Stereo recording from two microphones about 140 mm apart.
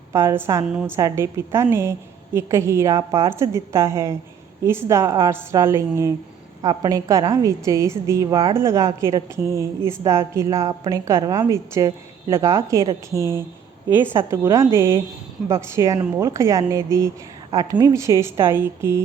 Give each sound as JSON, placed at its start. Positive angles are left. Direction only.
{"t": 0.1, "sound": "a woman's voice", "side_deg": -20}
{"t": 0.7, "sound": "a woman's voice", "side_deg": -5}
{"t": 0.9, "sound": "a woman's voice", "side_deg": -20}